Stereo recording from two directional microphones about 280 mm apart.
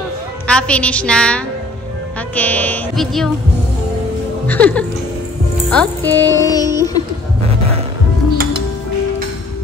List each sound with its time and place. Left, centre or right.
0.5 s a woman's voice: centre
4.5 s a woman's voice: centre
7.4 s music: right